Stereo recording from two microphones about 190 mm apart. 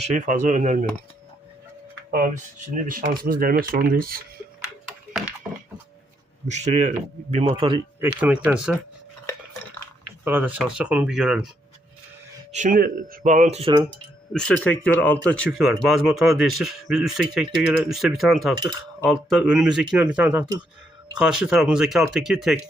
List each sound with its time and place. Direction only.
0.0 s speech: 40° right (ahead or behind)
2.0 s speech: 50° right (ahead or behind)
5.1 s a sound: 5° right (ahead or behind)
6.5 s speech: 35° right (ahead or behind)
8.0 s speech: 10° right (ahead or behind)
10.2 s speech: 10° right (ahead or behind)
12.5 s speech: 40° right (ahead or behind)
14.3 s speech: 5° left (ahead or behind)
15.4 s speech: 5° right (ahead or behind)
18.6 s cutlery: 20° right (ahead or behind)
19.3 s speech: 5° right (ahead or behind)